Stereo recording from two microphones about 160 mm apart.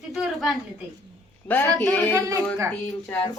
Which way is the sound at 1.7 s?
Centre (ahead or behind).